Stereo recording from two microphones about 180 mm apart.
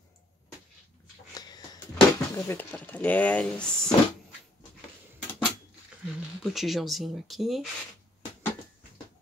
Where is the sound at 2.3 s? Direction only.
10° left (ahead or behind).